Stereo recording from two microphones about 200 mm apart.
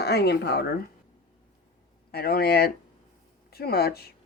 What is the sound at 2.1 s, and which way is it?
Speech, 50° left (ahead or behind).